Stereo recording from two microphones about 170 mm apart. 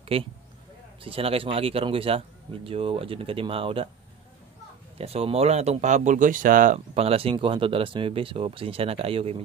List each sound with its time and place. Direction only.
0.1 s a man's voice: 35° right (ahead or behind)
4.9 s speech: 35° right (ahead or behind); by 6.8 s 50° right (ahead or behind)
6.9 s a man's voice: 35° right (ahead or behind)